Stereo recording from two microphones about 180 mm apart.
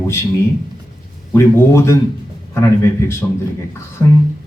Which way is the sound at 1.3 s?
15° left (ahead or behind).